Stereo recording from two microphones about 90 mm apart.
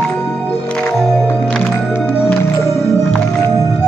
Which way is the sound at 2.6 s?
35° left (ahead or behind).